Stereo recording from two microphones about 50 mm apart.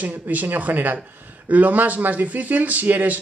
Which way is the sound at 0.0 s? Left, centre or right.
Right.